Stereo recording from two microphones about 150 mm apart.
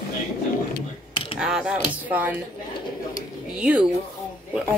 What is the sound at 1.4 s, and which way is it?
Speech, 5° right (ahead or behind).